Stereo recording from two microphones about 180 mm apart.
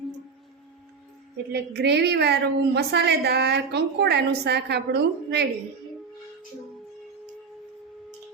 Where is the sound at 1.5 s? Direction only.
70° right (ahead or behind).